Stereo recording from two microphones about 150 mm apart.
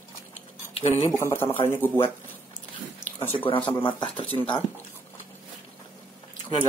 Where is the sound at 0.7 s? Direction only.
40° left (ahead or behind).